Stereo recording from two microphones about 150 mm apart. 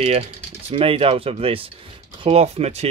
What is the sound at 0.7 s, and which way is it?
Speech, 40° right (ahead or behind).